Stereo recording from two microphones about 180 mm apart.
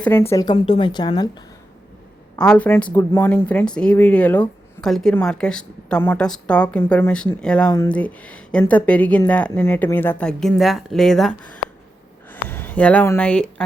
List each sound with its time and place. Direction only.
0.0 s speech: 10° left (ahead or behind)
0.5 s a woman's voice: 30° left (ahead or behind)
2.4 s speech: 5° left (ahead or behind)